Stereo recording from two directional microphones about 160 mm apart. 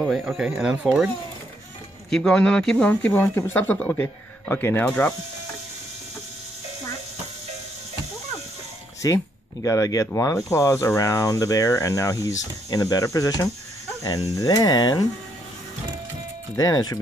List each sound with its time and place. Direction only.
0.6 s speech: 5° right (ahead or behind)
9.0 s speech: 20° left (ahead or behind)
16.5 s speech: 25° left (ahead or behind)